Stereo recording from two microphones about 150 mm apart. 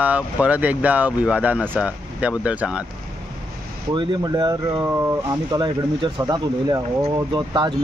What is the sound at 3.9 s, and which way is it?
Speech, 30° right (ahead or behind).